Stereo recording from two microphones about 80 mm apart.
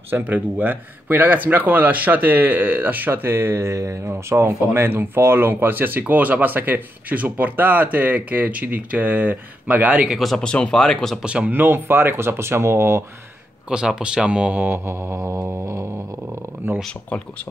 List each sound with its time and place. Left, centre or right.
0.1 s speech: right
10.1 s speech: centre
11.2 s speech: centre
11.5 s speech: right
13.7 s speech: centre; by 16.8 s right
17.1 s speech: centre